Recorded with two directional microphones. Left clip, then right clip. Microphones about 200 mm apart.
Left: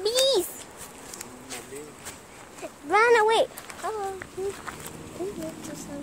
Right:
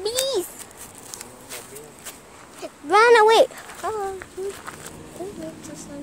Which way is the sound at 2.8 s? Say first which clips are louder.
Right 6 dB; 35° right (ahead or behind).